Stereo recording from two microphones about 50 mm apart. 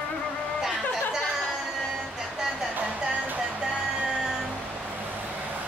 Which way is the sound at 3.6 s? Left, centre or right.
Centre.